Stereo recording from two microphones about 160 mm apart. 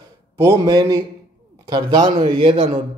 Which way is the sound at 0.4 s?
25° right (ahead or behind).